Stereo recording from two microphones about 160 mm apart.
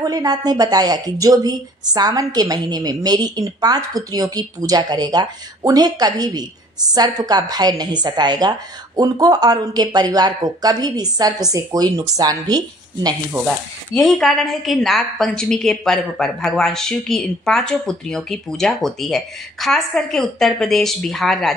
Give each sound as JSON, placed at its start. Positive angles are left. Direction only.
{"t": 0.0, "sound": "a woman's voice", "side_deg": -25}
{"t": 13.9, "sound": "a woman's voice", "side_deg": 0}